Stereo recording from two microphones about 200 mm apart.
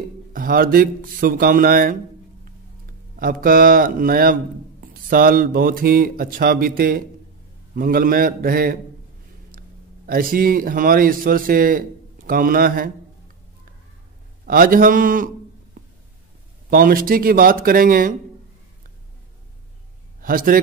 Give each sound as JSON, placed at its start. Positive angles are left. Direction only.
{"t": 0.3, "sound": "speech", "side_deg": -45}
{"t": 3.2, "sound": "a man's voice", "side_deg": -45}
{"t": 14.4, "sound": "speech", "side_deg": -45}
{"t": 16.7, "sound": "speech", "side_deg": -45}
{"t": 20.2, "sound": "a man's voice", "side_deg": -45}